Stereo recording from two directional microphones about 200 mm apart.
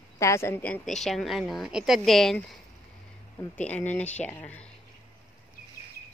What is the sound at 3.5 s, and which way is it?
Speech, 5° left (ahead or behind).